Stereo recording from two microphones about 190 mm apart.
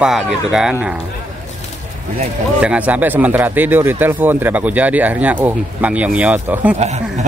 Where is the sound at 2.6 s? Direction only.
5° right (ahead or behind).